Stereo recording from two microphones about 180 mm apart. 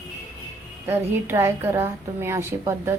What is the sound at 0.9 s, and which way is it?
Speech, 15° right (ahead or behind).